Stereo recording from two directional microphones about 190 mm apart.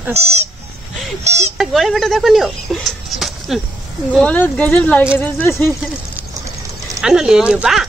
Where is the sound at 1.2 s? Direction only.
35° right (ahead or behind).